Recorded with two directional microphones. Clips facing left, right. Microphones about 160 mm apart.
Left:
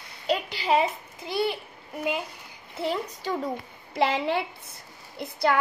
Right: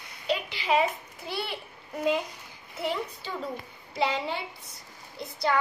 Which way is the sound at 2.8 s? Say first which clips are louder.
Left 2 dB; 40° left (ahead or behind).